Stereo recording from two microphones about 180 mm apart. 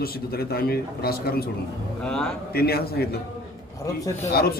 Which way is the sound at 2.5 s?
60° left (ahead or behind).